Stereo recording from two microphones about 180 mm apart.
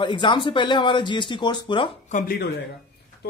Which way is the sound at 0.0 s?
25° left (ahead or behind).